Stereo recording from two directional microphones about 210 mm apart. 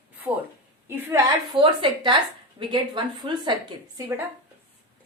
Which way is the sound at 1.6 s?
25° right (ahead or behind).